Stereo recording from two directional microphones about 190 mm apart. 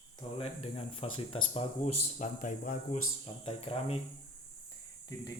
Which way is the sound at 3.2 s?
30° left (ahead or behind).